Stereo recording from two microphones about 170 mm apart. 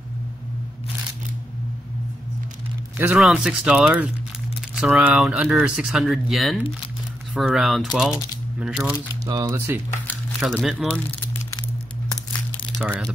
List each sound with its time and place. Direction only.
3.0 s speech: 5° right (ahead or behind)
9.2 s speech: 20° right (ahead or behind)
10.4 s speech: 5° right (ahead or behind)